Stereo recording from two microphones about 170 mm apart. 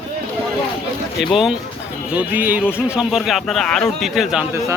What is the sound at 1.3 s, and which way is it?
Speech, centre (ahead or behind).